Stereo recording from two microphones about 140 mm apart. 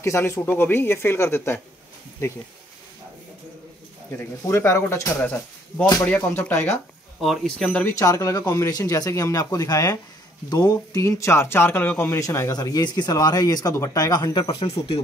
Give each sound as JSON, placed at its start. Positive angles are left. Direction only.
{"t": 0.0, "sound": "speech", "side_deg": 20}
{"t": 4.2, "sound": "speech", "side_deg": 20}
{"t": 7.2, "sound": "speech", "side_deg": 0}
{"t": 7.8, "sound": "speech", "side_deg": 25}